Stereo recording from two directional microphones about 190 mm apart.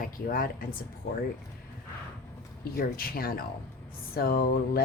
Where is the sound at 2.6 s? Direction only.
50° left (ahead or behind).